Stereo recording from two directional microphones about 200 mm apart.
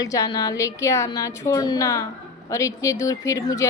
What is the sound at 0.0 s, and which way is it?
A woman's voice, 15° left (ahead or behind).